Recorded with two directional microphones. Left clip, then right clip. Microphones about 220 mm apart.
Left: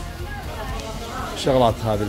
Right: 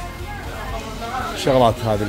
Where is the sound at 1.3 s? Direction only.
5° right (ahead or behind).